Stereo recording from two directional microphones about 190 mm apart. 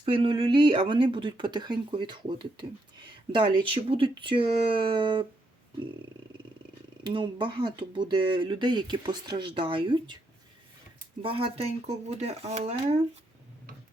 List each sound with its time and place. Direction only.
0.0 s speech: 30° right (ahead or behind)
7.0 s speech: 25° right (ahead or behind)
11.2 s speech: 30° right (ahead or behind)